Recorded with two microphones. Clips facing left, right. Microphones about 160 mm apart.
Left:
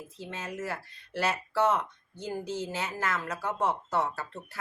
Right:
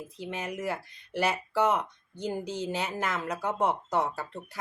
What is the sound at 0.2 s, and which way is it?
Speech, 15° right (ahead or behind).